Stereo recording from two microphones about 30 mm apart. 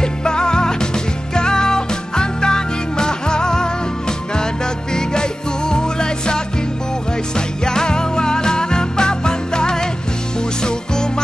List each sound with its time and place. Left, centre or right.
0.0 s music: left
4.9 s music: left